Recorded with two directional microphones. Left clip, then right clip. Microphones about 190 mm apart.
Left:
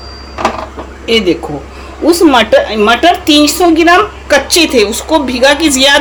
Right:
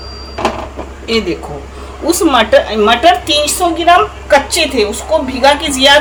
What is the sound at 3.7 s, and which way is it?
A woman's voice, 55° left (ahead or behind).